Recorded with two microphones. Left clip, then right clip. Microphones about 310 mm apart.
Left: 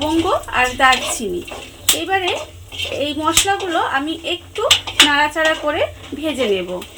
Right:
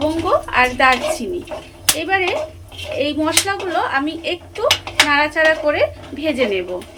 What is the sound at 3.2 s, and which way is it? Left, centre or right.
Speech, left.